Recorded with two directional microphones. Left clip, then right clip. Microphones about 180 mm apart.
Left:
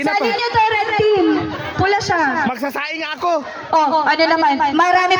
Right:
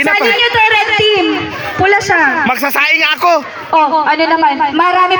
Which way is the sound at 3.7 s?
20° right (ahead or behind).